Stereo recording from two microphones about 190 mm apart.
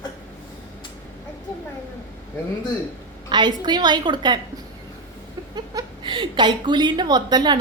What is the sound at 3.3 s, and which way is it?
A woman's voice, 25° right (ahead or behind).